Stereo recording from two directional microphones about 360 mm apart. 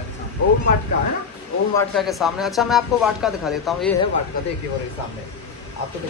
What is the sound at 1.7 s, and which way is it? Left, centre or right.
A man's voice, centre.